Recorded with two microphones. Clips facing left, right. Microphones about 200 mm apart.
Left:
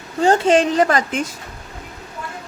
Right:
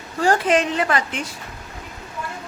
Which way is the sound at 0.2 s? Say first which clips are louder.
Left 4 dB; 25° left (ahead or behind).